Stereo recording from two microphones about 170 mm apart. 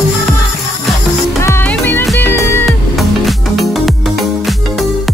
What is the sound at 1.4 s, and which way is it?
Music, 10° left (ahead or behind).